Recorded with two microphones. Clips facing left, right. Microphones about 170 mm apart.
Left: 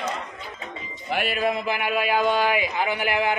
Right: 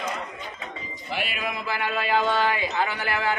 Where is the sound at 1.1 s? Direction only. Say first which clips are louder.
Left 6 dB; 45° left (ahead or behind).